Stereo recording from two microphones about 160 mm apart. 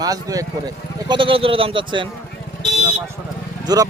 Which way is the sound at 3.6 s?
25° right (ahead or behind).